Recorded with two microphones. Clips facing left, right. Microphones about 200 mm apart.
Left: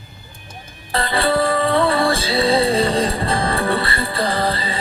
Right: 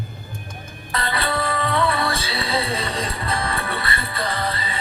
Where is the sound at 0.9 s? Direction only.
30° left (ahead or behind).